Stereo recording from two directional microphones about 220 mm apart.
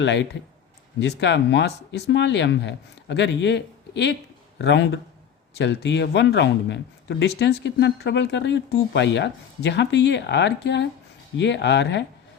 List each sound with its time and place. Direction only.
0.0 s speech: 55° left (ahead or behind)